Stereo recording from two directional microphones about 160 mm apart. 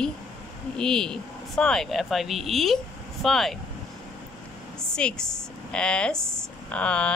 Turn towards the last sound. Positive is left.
turn(degrees=5)  # may be behind; listen again after turning